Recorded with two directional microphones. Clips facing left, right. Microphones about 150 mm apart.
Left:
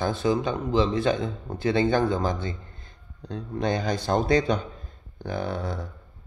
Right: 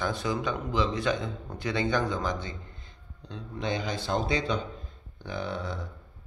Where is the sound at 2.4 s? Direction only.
45° left (ahead or behind).